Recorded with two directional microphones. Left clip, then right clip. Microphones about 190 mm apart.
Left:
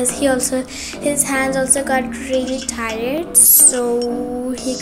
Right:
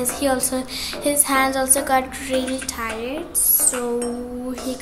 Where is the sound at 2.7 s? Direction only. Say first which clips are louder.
Left 5 dB; 20° left (ahead or behind).